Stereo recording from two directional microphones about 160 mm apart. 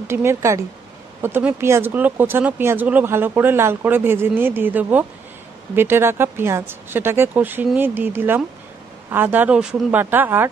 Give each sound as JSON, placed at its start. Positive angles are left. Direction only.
{"t": 0.1, "sound": "speech", "side_deg": -15}